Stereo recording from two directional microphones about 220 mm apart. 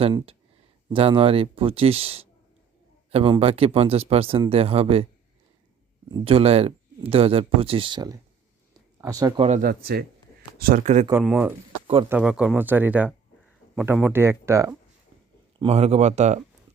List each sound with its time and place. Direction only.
0.0 s speech: 25° right (ahead or behind)
6.1 s speech: 20° right (ahead or behind)
11.1 s speech: 5° right (ahead or behind)
15.5 s speech: 25° right (ahead or behind)